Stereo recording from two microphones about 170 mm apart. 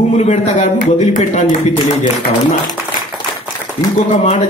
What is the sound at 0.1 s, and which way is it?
A man's voice, 45° left (ahead or behind).